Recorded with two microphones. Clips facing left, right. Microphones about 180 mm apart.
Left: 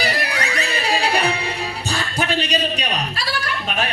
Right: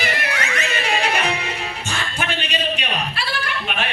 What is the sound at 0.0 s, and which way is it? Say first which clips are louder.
Music: left 2 dB; 35° left (ahead or behind).